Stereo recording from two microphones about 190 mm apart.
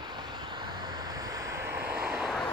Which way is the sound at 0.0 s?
25° right (ahead or behind).